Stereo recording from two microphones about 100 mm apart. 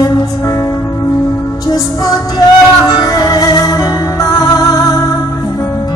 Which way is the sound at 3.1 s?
40° left (ahead or behind).